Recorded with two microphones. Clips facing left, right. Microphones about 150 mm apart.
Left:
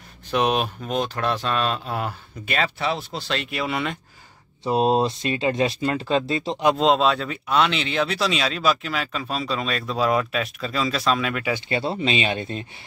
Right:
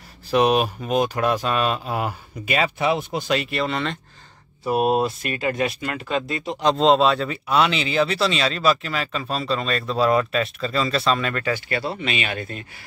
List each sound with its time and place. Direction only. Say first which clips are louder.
0.3 s speech: right 4 dB; 5° right (ahead or behind)
3.4 s speech: right 2 dB; 5° left (ahead or behind)
4.6 s speech: even; 25° left (ahead or behind)
6.6 s speech: right 2 dB; 5° left (ahead or behind)
11.7 s speech: left 2 dB; 25° left (ahead or behind)